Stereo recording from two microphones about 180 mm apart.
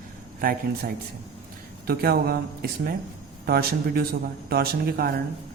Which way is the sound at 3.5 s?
60° right (ahead or behind).